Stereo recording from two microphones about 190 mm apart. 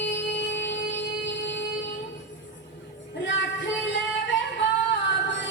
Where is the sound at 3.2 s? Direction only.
70° left (ahead or behind).